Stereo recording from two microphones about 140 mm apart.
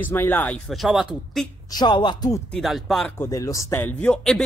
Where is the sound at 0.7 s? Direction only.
Centre (ahead or behind).